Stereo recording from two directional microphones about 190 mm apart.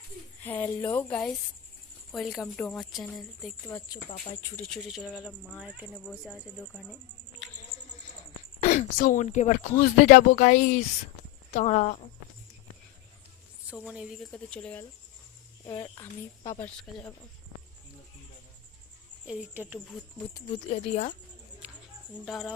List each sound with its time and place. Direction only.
0.4 s a woman's voice: 10° left (ahead or behind)
3.7 s a woman's voice: 15° left (ahead or behind); by 6.5 s 5° right (ahead or behind)
7.7 s a sound: 50° right (ahead or behind)
8.8 s speech: 40° left (ahead or behind)
13.7 s a woman's voice: 5° right (ahead or behind)
15.6 s speech: 20° left (ahead or behind); by 17.1 s 5° left (ahead or behind)
19.3 s speech: 5° right (ahead or behind)
20.5 s speech: 30° left (ahead or behind)
21.6 s a sound: 5° right (ahead or behind)
22.3 s a woman's voice: centre (ahead or behind)